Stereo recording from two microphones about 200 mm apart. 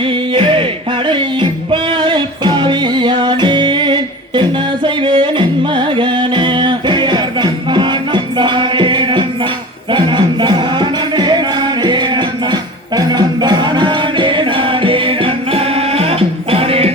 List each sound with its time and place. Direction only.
0.0 s music: 25° right (ahead or behind)